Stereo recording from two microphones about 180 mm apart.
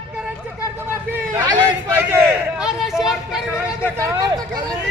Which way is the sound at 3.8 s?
20° right (ahead or behind).